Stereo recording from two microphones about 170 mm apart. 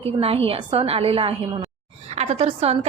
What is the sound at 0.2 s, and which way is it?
A woman's voice, 35° right (ahead or behind).